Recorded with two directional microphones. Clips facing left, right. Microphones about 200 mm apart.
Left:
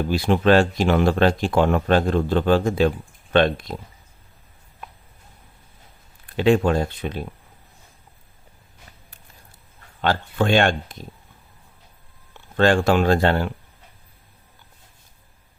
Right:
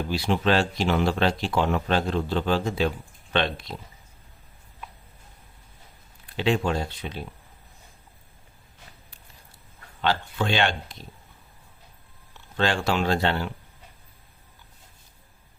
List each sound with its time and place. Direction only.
0.1 s speech: 50° left (ahead or behind)
6.2 s speech: 50° left (ahead or behind)
10.0 s speech: 50° left (ahead or behind)
12.3 s speech: 50° left (ahead or behind)